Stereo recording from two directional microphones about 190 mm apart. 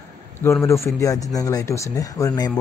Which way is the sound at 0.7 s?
15° left (ahead or behind).